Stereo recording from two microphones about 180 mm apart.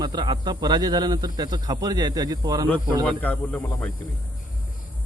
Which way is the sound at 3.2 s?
10° left (ahead or behind).